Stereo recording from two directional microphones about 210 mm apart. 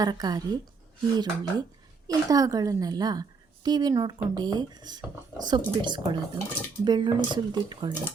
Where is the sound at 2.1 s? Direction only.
15° right (ahead or behind).